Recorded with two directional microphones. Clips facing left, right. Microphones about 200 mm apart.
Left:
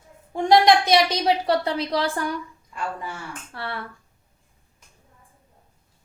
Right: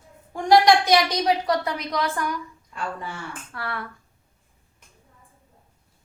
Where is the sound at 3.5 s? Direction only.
30° left (ahead or behind).